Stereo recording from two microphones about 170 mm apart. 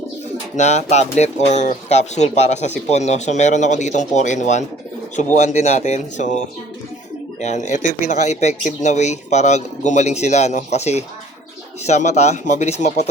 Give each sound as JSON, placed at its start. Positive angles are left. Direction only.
{"t": 0.5, "sound": "speech", "side_deg": 45}
{"t": 7.4, "sound": "speech", "side_deg": 45}